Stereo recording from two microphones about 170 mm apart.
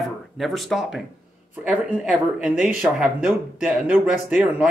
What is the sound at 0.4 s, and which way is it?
Speech, centre (ahead or behind).